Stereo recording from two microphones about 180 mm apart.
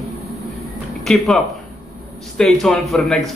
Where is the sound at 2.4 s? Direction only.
Centre (ahead or behind).